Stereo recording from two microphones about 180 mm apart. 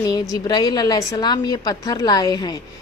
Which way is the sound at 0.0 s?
20° left (ahead or behind).